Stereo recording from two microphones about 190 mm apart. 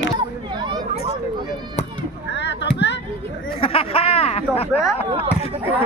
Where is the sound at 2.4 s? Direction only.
65° left (ahead or behind).